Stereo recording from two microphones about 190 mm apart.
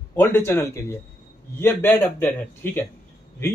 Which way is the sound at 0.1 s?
10° left (ahead or behind).